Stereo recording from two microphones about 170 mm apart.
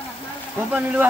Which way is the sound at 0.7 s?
5° right (ahead or behind).